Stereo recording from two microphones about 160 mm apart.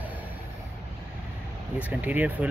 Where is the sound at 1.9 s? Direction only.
10° right (ahead or behind).